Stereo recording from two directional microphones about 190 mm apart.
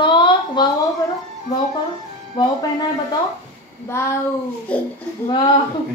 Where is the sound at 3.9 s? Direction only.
15° left (ahead or behind).